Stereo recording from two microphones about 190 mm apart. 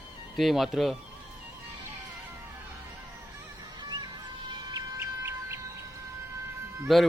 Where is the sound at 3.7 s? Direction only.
25° right (ahead or behind).